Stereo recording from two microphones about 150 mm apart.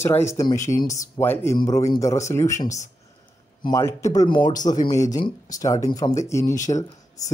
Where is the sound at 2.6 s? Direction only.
55° left (ahead or behind).